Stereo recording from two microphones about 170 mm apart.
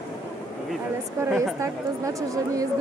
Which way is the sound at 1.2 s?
15° right (ahead or behind).